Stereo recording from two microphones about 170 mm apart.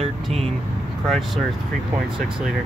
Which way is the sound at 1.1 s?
Centre (ahead or behind).